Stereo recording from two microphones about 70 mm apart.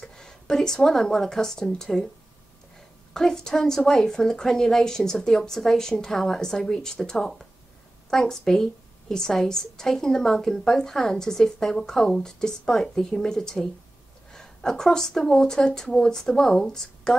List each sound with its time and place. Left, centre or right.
0.0 s speech: centre
3.1 s a woman's voice: centre